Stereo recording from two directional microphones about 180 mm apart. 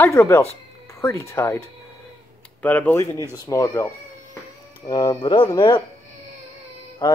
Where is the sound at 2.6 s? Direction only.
10° left (ahead or behind); by 5.8 s 25° left (ahead or behind).